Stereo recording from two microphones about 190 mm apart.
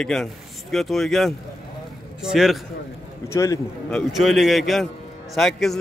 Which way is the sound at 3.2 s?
15° left (ahead or behind).